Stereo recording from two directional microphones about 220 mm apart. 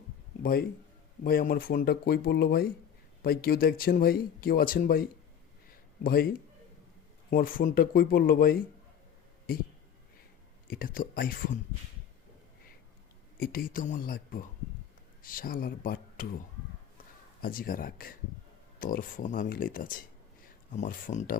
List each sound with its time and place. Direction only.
1.2 s speech: 40° left (ahead or behind)
10.7 s speech: 40° left (ahead or behind)
13.4 s speech: 40° left (ahead or behind)
17.4 s speech: 40° left (ahead or behind)